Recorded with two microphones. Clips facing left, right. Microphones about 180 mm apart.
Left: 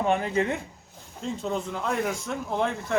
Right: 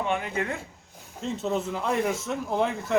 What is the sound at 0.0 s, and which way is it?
Speech, 40° left (ahead or behind).